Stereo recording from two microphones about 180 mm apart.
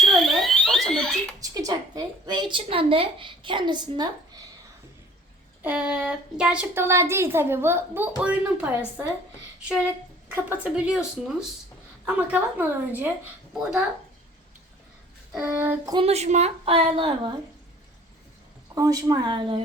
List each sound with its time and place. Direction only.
0.0 s fire alarm: centre (ahead or behind)
1.4 s a sound: 20° right (ahead or behind)
5.6 s a child's voice: 10° right (ahead or behind)
10.2 s a child's voice: 10° right (ahead or behind)
15.3 s a child's voice: 10° right (ahead or behind)
16.0 s a woman's voice: 35° right (ahead or behind)
18.7 s speech: 20° right (ahead or behind)